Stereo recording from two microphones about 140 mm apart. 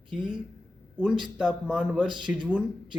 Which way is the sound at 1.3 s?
5° right (ahead or behind).